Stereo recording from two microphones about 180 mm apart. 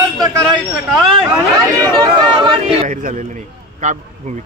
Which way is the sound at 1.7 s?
25° right (ahead or behind).